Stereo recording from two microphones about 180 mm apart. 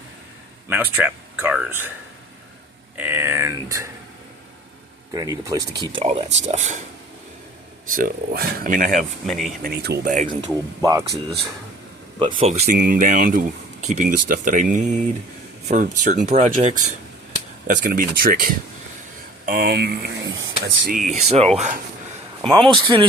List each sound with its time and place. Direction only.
0.7 s speech: 10° right (ahead or behind)
3.0 s speech: 15° right (ahead or behind)
5.1 s speech: 20° right (ahead or behind); by 6.8 s 40° right (ahead or behind)
7.9 s speech: 50° right (ahead or behind)
9.2 s speech: centre (ahead or behind)
9.6 s speech: 60° right (ahead or behind); by 10.5 s 45° right (ahead or behind)
10.5 s speech: 20° right (ahead or behind)
12.4 s speech: 40° right (ahead or behind); by 20.7 s 90° right
20.9 s speech: 40° right (ahead or behind)
22.8 s speech: 25° right (ahead or behind)